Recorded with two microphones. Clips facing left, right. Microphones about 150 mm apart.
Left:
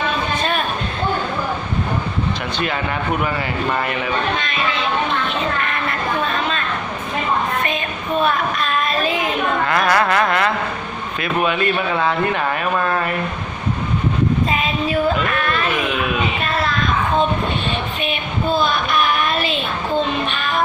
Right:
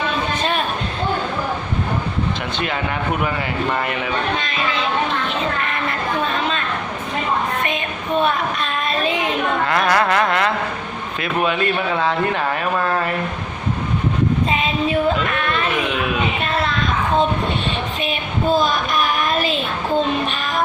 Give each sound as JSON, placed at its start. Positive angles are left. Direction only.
{"t": 5.6, "sound": "speech", "side_deg": -25}
{"t": 7.6, "sound": "a child's voice", "side_deg": -25}
{"t": 14.5, "sound": "child singing", "side_deg": -25}
{"t": 18.0, "sound": "child singing", "side_deg": -40}